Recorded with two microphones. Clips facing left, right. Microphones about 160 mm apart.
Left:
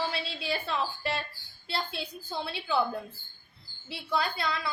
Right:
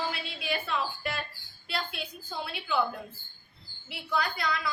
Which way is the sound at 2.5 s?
30° left (ahead or behind).